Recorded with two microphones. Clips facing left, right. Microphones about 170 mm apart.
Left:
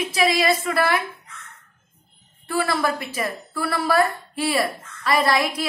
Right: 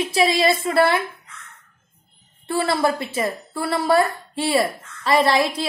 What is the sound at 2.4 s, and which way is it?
A woman's voice, 25° right (ahead or behind).